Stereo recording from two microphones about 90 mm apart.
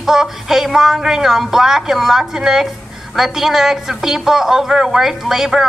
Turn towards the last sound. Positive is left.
turn(degrees=-5)  # may be behind; listen again after turning